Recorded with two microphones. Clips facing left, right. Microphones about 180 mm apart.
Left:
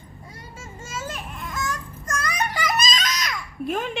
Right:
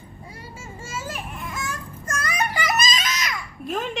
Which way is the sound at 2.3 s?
5° right (ahead or behind).